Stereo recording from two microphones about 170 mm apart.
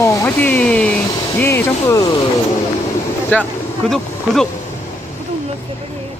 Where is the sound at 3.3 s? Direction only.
10° left (ahead or behind).